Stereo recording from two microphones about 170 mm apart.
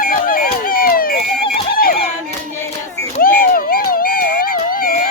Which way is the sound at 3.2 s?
60° left (ahead or behind).